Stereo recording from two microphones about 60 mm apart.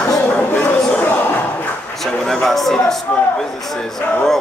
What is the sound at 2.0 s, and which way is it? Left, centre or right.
Speech, centre.